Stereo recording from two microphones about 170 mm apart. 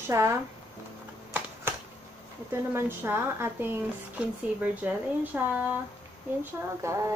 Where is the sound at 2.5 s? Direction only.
15° right (ahead or behind).